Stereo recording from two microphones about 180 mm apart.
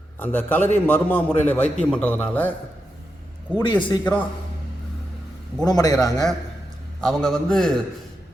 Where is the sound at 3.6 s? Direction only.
25° left (ahead or behind).